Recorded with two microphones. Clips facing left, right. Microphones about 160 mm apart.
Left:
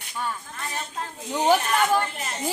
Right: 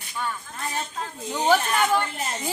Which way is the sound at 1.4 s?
10° left (ahead or behind).